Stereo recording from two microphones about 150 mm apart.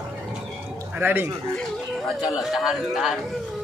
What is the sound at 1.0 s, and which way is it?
Speech, 15° right (ahead or behind).